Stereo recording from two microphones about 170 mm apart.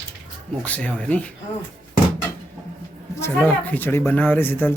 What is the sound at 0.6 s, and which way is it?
Speech, 10° left (ahead or behind).